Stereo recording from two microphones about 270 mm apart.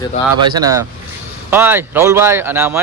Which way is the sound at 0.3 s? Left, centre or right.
Centre.